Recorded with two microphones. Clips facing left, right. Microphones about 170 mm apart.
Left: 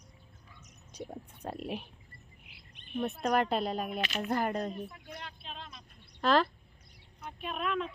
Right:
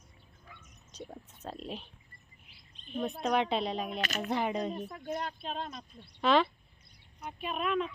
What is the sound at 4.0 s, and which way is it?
Speech, 45° right (ahead or behind).